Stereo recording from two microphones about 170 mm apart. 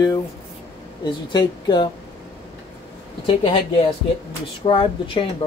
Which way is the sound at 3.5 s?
30° left (ahead or behind).